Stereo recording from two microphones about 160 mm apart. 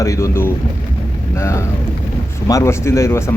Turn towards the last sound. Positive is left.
turn(degrees=15)  # may be behind; listen again after turning